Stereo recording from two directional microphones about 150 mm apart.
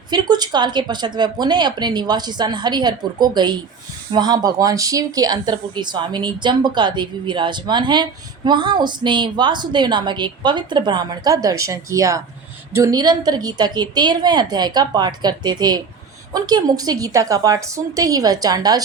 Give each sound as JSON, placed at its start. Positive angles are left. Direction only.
{"t": 0.1, "sound": "a woman's voice", "side_deg": -30}